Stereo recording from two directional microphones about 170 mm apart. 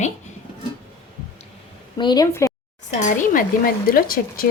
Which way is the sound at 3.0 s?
50° left (ahead or behind).